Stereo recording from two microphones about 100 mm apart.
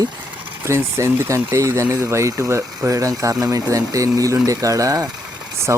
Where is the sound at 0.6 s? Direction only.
30° right (ahead or behind).